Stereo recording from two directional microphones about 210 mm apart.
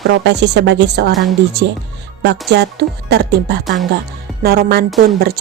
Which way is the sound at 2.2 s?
55° right (ahead or behind).